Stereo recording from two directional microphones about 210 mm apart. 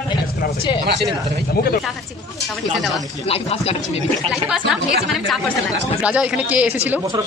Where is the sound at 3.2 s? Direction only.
30° left (ahead or behind).